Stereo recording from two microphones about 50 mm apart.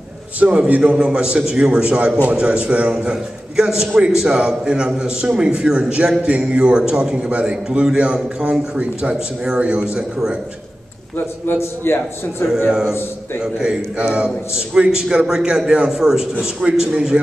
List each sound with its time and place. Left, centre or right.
0.7 s a man's voice: right
0.9 s a man's voice: centre
7.2 s a man's voice: right
11.4 s a man's voice: left
12.6 s a man's voice: centre
13.9 s a man's voice: right
14.2 s a man's voice: centre